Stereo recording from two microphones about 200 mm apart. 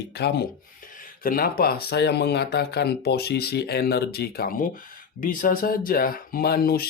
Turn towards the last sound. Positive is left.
turn(degrees=50)  # may be behind; listen again after turning